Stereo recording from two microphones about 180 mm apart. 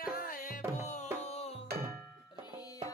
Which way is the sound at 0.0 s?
55° left (ahead or behind).